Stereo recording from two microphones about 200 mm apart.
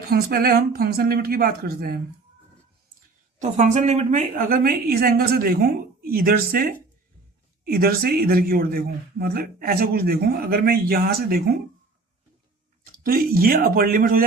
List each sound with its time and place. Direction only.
0.1 s speech: 50° right (ahead or behind)
3.3 s speech: 35° right (ahead or behind)
13.0 s speech: 45° right (ahead or behind)